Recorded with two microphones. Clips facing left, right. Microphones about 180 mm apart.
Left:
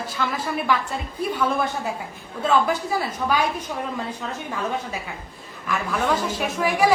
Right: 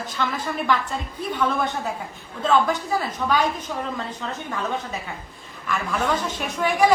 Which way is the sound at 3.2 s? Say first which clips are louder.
Right 1 dB; 10° left (ahead or behind).